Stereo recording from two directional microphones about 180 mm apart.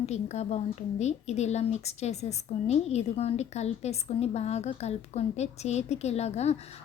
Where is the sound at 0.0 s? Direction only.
40° left (ahead or behind).